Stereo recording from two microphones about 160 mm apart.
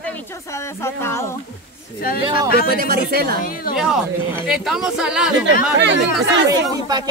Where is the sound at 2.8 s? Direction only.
70° right (ahead or behind).